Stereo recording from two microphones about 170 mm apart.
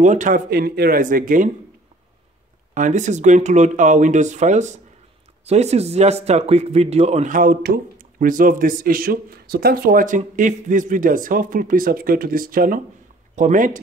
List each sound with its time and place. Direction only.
0.0 s speech: 45° right (ahead or behind)
2.7 s speech: 45° right (ahead or behind)